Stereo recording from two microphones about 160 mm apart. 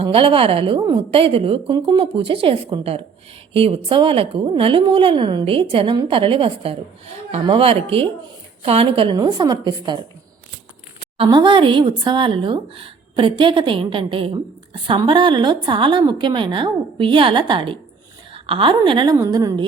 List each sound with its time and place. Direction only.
0.0 s a woman's voice: 35° right (ahead or behind)
11.2 s a woman's voice: 30° right (ahead or behind)